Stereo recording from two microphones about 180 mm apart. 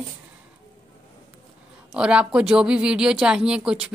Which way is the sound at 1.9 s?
5° right (ahead or behind).